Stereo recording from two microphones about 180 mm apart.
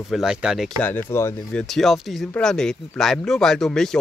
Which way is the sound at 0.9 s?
10° left (ahead or behind).